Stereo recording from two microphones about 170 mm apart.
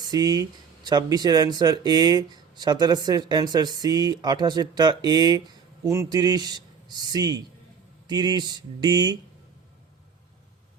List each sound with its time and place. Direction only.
0.1 s speech: 25° right (ahead or behind)